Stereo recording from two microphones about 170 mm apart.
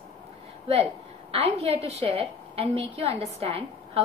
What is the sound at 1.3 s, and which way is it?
A woman's voice, 40° right (ahead or behind).